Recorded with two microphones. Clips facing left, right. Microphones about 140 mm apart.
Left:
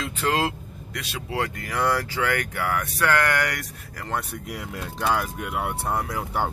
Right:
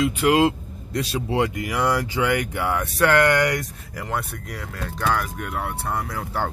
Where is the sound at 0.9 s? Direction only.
35° right (ahead or behind).